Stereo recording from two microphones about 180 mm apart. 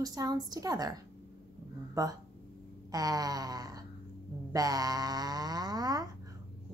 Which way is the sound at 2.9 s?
20° right (ahead or behind).